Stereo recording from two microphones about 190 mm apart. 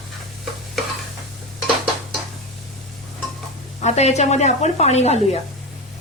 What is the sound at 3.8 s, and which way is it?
A woman's voice, 35° left (ahead or behind).